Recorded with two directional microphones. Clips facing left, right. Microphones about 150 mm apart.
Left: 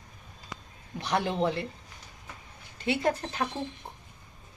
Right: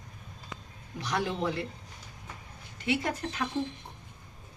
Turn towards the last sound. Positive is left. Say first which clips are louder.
# left 4 dB
turn(degrees=30)  # may be behind; listen again after turning